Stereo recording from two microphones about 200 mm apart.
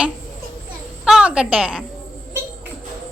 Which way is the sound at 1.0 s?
5° right (ahead or behind).